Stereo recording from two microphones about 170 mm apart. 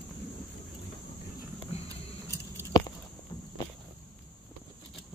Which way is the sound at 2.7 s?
20° left (ahead or behind).